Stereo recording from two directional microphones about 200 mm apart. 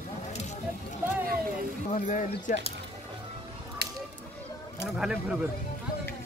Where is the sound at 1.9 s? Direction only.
40° left (ahead or behind).